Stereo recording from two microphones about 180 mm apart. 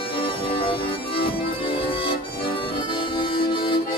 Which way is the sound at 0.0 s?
30° left (ahead or behind).